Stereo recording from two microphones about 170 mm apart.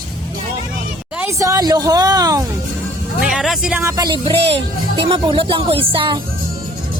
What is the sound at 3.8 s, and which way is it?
Speech, 20° right (ahead or behind).